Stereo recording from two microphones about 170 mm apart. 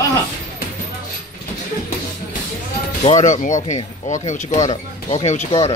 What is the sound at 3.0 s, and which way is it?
Speech, 45° left (ahead or behind).